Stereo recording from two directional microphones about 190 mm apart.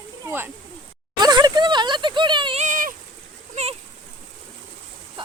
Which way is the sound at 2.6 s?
45° right (ahead or behind).